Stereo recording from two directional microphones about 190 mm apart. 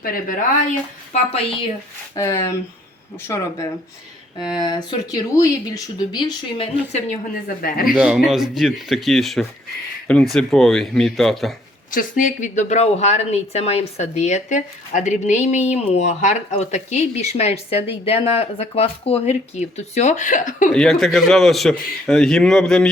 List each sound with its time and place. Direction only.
0.0 s a woman's voice: 50° left (ahead or behind)
1.1 s speech: 35° left (ahead or behind)
2.1 s speech: 15° left (ahead or behind)
6.9 s a woman's voice: 45° left (ahead or behind)
7.9 s a man's voice: 5° right (ahead or behind)
11.9 s speech: 45° left (ahead or behind)
20.7 s a man's voice: centre (ahead or behind)